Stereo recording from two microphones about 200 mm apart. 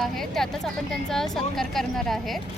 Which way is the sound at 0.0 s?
Centre (ahead or behind).